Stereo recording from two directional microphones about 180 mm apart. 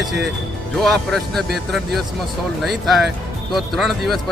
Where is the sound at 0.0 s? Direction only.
Centre (ahead or behind).